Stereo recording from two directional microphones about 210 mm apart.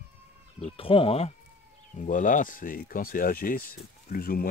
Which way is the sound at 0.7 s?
25° left (ahead or behind).